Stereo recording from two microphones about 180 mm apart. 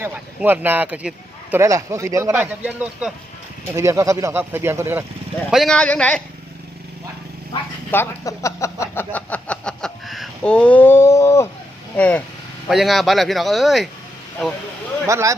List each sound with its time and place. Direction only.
0.0 s speech: 10° right (ahead or behind)
3.8 s speech: 15° right (ahead or behind)
5.5 s speech: centre (ahead or behind)
7.9 s speech: 15° left (ahead or behind); by 13.8 s centre (ahead or behind)
15.0 s speech: 15° right (ahead or behind)